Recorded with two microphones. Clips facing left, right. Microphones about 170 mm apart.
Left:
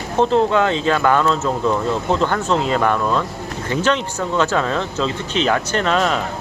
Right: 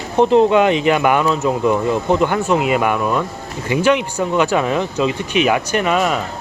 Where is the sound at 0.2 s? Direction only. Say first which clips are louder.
Right 4 dB; 15° right (ahead or behind).